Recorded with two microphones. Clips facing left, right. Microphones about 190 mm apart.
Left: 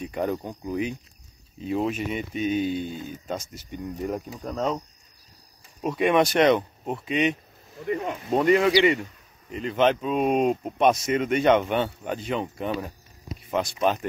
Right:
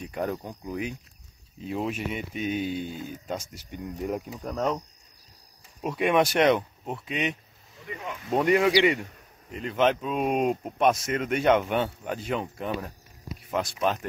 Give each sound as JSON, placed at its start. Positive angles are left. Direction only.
{"t": 0.0, "sound": "a sound", "side_deg": 0}
{"t": 0.5, "sound": "speech", "side_deg": -5}
{"t": 5.8, "sound": "speech", "side_deg": -5}
{"t": 7.8, "sound": "speech", "side_deg": 45}
{"t": 8.4, "sound": "speech", "side_deg": -10}